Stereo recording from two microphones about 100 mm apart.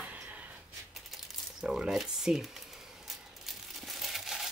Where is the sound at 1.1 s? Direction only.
5° right (ahead or behind).